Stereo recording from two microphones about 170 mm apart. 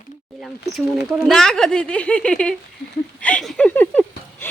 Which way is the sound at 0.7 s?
Centre (ahead or behind).